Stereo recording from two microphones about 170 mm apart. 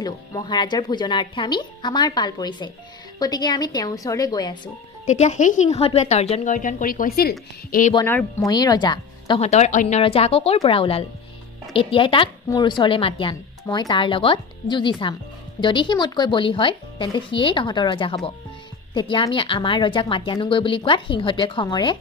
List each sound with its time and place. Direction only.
0.0 s speech: 25° left (ahead or behind)
5.0 s a woman's voice: 45° left (ahead or behind); by 7.9 s 60° left (ahead or behind)
7.9 s speech: 15° left (ahead or behind)
9.4 s speech: 40° left (ahead or behind); by 21.9 s 25° left (ahead or behind)